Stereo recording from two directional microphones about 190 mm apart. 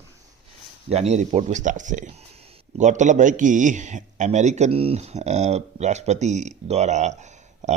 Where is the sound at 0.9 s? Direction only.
35° right (ahead or behind).